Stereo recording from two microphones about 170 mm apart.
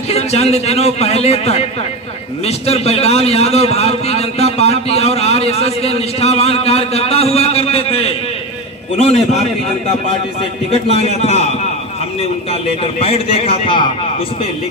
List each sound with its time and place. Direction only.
0.1 s a man's voice: 40° left (ahead or behind)
10.7 s a man's voice: 35° left (ahead or behind)